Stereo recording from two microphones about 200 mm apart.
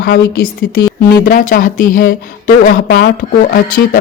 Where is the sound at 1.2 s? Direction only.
40° left (ahead or behind).